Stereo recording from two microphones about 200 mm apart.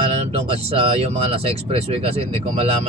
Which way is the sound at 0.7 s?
30° right (ahead or behind).